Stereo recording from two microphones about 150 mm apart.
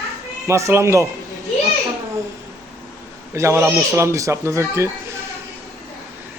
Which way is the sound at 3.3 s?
15° right (ahead or behind).